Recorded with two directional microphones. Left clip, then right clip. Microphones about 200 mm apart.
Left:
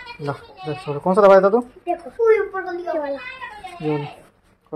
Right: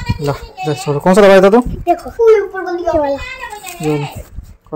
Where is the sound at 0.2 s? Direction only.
25° right (ahead or behind).